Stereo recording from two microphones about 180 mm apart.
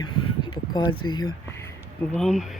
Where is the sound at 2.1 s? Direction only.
Centre (ahead or behind).